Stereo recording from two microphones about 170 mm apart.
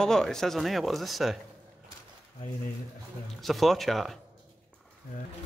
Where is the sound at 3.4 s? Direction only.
Centre (ahead or behind).